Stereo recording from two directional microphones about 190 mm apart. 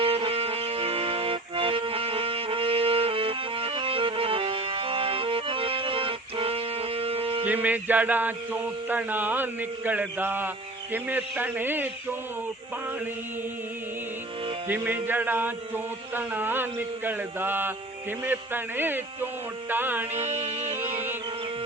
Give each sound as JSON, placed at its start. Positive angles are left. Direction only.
{"t": 0.0, "sound": "music", "side_deg": -30}
{"t": 7.4, "sound": "a man's voice", "side_deg": -10}
{"t": 14.7, "sound": "a man's voice", "side_deg": -10}
{"t": 20.9, "sound": "music", "side_deg": -10}